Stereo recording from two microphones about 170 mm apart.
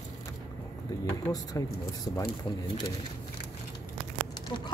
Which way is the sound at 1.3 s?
20° left (ahead or behind).